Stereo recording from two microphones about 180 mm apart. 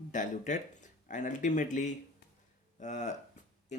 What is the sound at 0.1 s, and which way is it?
Speech, 45° left (ahead or behind).